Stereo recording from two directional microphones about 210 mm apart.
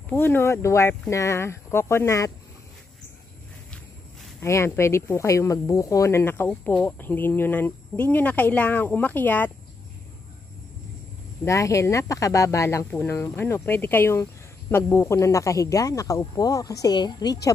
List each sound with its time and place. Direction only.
0.1 s speech: 10° left (ahead or behind)
4.4 s speech: 15° left (ahead or behind)
11.4 s speech: 15° left (ahead or behind)